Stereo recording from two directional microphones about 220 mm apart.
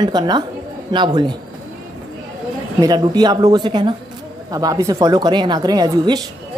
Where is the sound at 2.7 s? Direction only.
15° right (ahead or behind).